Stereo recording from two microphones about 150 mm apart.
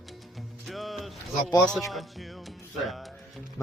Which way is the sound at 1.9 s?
Centre (ahead or behind).